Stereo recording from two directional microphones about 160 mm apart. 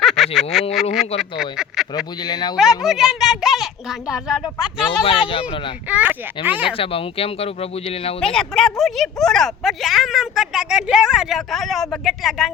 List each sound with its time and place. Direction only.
0.0 s a sound: centre (ahead or behind)
1.2 s speech: 5° right (ahead or behind)
2.2 s speech: 25° left (ahead or behind)
2.6 s speech: centre (ahead or behind)
5.0 s speech: 35° left (ahead or behind)
5.9 s speech: 10° right (ahead or behind)
6.7 s speech: 35° left (ahead or behind)
8.2 s speech: 5° left (ahead or behind)